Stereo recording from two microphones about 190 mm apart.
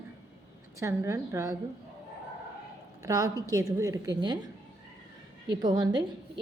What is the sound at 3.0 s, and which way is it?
A woman's voice, 15° right (ahead or behind).